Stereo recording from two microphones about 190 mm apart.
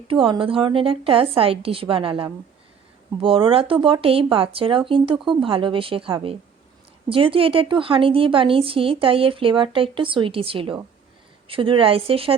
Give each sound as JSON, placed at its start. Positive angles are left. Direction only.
{"t": 0.1, "sound": "a woman's voice", "side_deg": -25}